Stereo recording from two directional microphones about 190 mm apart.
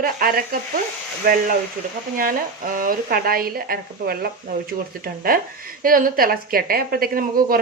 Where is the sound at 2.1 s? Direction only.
50° right (ahead or behind).